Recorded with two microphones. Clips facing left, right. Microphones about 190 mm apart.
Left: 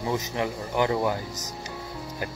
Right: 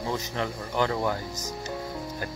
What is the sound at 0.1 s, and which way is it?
Speech, 15° left (ahead or behind).